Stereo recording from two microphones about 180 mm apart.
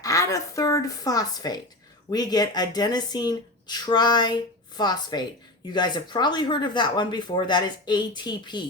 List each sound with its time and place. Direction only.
0.0 s speech: 20° left (ahead or behind)